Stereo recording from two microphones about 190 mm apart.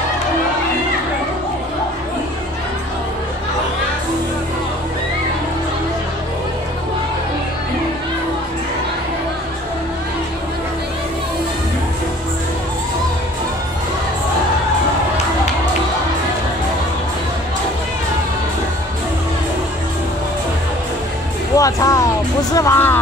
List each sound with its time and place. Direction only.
21.5 s music: 15° left (ahead or behind)